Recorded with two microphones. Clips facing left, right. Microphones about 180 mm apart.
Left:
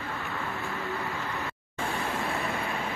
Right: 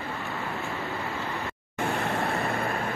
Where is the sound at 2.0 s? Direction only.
60° right (ahead or behind).